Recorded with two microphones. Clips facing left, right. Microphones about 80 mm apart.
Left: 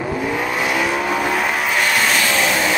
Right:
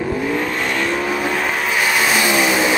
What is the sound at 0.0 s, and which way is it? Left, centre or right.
Vehicle, centre.